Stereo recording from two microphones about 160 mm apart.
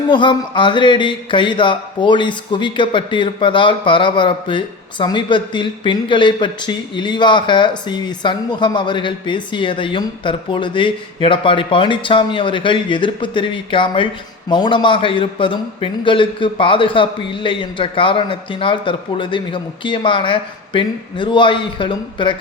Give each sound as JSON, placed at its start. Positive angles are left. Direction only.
{"t": 0.1, "sound": "mantra", "side_deg": 30}